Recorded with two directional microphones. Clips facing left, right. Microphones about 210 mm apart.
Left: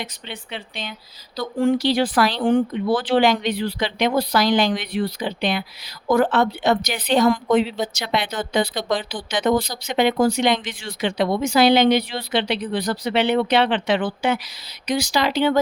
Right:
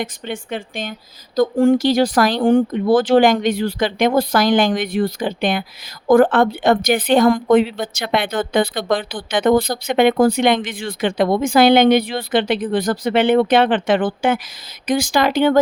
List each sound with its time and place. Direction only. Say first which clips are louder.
0.0 s a woman's voice: right 8 dB; 45° right (ahead or behind)